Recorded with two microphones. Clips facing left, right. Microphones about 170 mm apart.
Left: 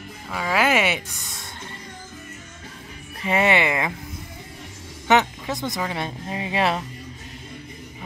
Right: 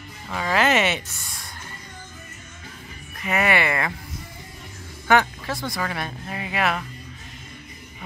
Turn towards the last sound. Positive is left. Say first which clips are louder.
# left 2 dB
turn(degrees=30)  # may be behind; listen again after turning